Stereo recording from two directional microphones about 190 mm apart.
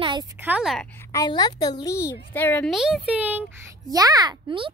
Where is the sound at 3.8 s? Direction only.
20° right (ahead or behind).